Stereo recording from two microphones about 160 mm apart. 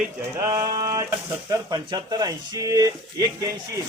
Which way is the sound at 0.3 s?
20° right (ahead or behind).